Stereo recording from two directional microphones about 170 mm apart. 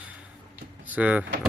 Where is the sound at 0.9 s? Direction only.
10° right (ahead or behind).